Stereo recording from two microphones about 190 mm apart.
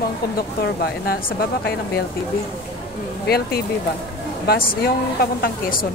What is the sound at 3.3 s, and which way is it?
A woman's voice, 55° left (ahead or behind).